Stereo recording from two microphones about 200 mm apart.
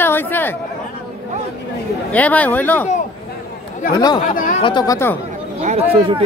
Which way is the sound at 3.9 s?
20° left (ahead or behind).